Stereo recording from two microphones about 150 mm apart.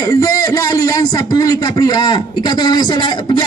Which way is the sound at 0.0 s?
25° left (ahead or behind).